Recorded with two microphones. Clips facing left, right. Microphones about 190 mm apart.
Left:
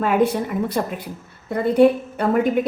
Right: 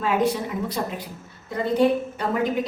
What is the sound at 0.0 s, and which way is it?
A woman's voice, 55° left (ahead or behind).